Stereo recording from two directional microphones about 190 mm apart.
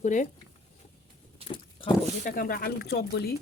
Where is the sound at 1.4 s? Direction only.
30° right (ahead or behind).